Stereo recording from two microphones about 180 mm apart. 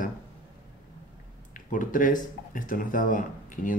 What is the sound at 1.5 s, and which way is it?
Speech, 45° left (ahead or behind).